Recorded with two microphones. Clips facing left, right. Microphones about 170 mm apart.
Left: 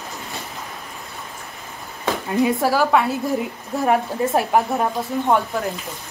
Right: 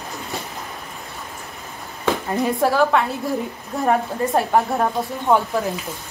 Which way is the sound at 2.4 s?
5° left (ahead or behind).